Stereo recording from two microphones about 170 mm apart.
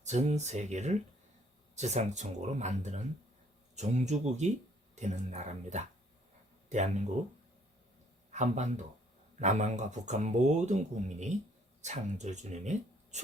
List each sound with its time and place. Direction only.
0.0 s speech: 40° right (ahead or behind)
8.3 s speech: 45° right (ahead or behind)